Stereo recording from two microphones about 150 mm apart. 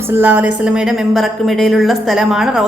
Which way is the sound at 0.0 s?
15° right (ahead or behind).